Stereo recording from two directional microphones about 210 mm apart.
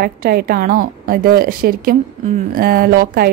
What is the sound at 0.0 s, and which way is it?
A woman's voice, 45° right (ahead or behind).